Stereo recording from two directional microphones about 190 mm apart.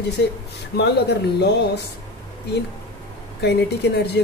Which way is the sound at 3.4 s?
60° left (ahead or behind).